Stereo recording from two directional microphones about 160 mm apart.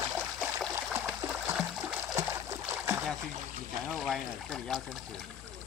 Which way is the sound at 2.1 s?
20° right (ahead or behind).